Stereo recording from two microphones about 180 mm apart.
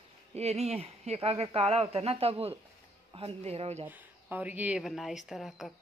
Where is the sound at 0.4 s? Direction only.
35° right (ahead or behind).